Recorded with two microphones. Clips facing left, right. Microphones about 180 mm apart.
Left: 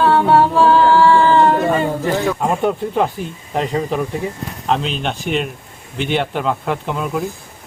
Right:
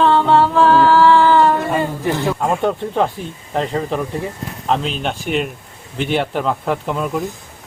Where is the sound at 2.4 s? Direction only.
5° left (ahead or behind).